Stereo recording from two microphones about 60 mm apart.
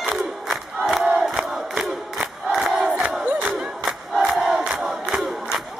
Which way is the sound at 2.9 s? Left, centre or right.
Right.